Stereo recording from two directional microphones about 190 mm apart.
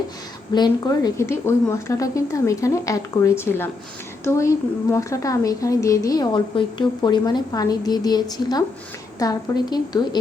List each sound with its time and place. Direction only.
0.5 s speech: 20° left (ahead or behind)